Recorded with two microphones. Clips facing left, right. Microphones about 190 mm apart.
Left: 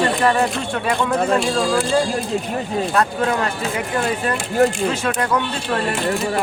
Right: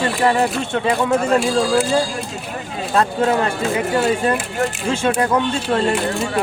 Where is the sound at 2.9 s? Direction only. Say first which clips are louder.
Right 5 dB; 25° right (ahead or behind).